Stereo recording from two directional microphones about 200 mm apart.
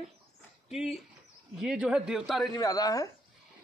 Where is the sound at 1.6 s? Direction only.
5° right (ahead or behind).